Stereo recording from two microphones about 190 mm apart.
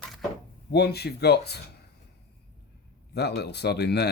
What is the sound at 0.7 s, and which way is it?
Speech, 60° left (ahead or behind).